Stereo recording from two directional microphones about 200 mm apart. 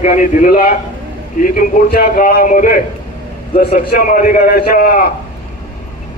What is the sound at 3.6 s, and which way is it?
A man's voice, 50° left (ahead or behind).